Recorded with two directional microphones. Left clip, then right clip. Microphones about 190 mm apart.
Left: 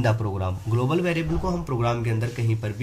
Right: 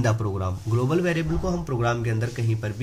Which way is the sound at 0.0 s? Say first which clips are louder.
Left 1 dB; 20° right (ahead or behind).